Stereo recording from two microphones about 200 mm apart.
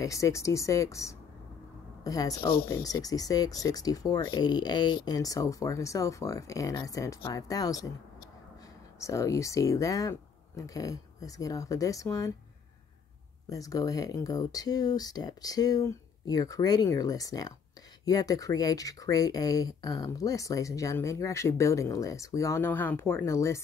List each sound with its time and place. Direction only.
0.0 s speech: 15° left (ahead or behind)
9.0 s speech: 15° left (ahead or behind)
13.5 s speech: 15° left (ahead or behind)